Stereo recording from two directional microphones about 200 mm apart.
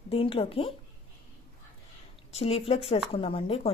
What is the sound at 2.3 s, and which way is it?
A woman's voice, 30° left (ahead or behind).